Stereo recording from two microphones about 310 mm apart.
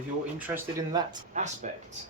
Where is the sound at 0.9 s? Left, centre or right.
Centre.